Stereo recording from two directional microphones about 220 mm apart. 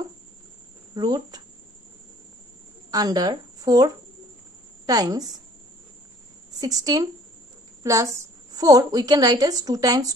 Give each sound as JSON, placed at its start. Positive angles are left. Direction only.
{"t": 0.9, "sound": "a woman's voice", "side_deg": -15}
{"t": 2.9, "sound": "a woman's voice", "side_deg": -15}
{"t": 6.6, "sound": "a woman's voice", "side_deg": -15}